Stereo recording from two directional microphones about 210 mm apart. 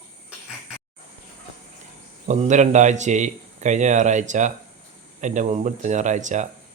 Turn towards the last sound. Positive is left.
turn(degrees=-35)  # may be behind; listen again after turning